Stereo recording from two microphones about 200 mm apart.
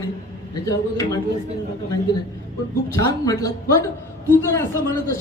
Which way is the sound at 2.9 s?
15° left (ahead or behind).